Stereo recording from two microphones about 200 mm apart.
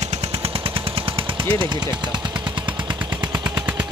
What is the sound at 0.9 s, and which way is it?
Gunshot, 25° right (ahead or behind).